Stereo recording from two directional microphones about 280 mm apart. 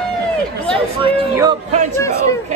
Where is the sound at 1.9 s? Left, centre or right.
Centre.